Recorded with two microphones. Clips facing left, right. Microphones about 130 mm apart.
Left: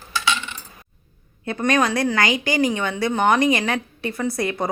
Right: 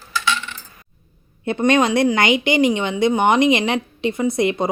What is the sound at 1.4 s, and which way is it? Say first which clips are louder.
Speech: right 4 dB; 25° right (ahead or behind).